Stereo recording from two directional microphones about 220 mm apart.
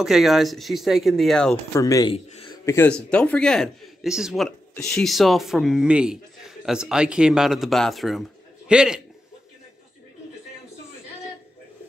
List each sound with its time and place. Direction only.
0.0 s a man's voice: centre (ahead or behind)
1.7 s speech: 15° left (ahead or behind)
2.1 s a sound: 25° left (ahead or behind)
2.6 s a man's voice: 10° left (ahead or behind)